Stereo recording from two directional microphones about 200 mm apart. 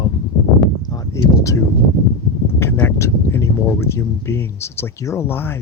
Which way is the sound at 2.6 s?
10° left (ahead or behind).